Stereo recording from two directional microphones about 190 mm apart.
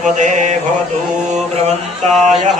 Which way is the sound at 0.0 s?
40° right (ahead or behind).